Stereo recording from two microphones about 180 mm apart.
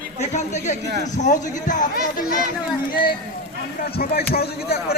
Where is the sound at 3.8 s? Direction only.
60° left (ahead or behind).